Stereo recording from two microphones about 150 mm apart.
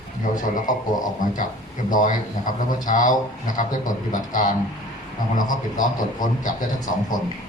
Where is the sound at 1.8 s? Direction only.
60° left (ahead or behind).